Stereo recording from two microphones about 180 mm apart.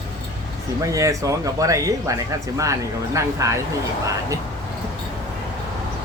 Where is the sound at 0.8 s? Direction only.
20° right (ahead or behind).